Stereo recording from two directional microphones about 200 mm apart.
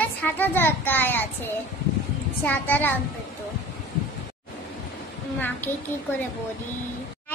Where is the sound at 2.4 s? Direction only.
10° left (ahead or behind).